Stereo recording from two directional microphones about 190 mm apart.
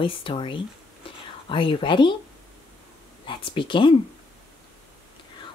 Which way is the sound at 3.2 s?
25° left (ahead or behind).